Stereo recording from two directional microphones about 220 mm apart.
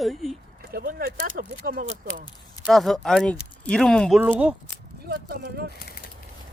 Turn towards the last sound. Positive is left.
turn(degrees=45)  # may be behind; listen again after turning